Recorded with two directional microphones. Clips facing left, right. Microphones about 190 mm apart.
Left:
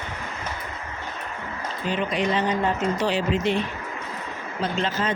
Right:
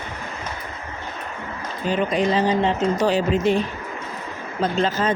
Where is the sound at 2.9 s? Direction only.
45° right (ahead or behind).